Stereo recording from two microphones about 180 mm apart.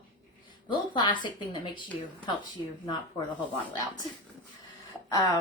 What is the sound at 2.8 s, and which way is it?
A woman's voice, 25° left (ahead or behind).